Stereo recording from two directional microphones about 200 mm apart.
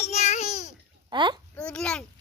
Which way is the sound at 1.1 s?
25° right (ahead or behind).